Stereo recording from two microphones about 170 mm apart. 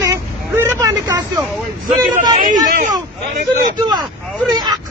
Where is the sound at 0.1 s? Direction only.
15° right (ahead or behind).